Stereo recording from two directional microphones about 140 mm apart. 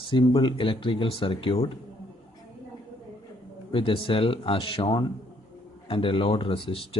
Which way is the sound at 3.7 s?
40° left (ahead or behind).